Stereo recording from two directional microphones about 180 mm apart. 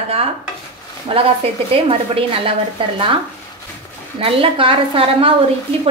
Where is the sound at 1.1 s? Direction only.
30° right (ahead or behind).